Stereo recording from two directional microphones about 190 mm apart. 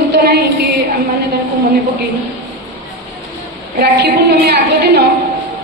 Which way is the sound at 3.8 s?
60° right (ahead or behind).